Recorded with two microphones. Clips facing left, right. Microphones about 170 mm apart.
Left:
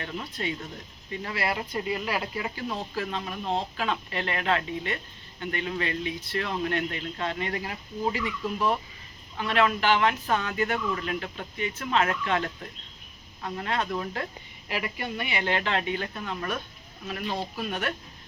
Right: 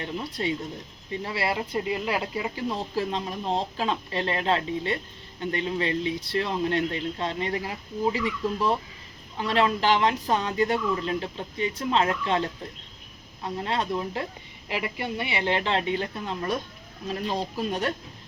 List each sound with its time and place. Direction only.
0.0 s speech: 30° right (ahead or behind)
13.9 s speech: 20° right (ahead or behind)